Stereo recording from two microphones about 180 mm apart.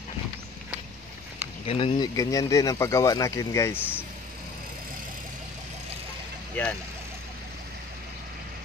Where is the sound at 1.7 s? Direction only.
30° left (ahead or behind).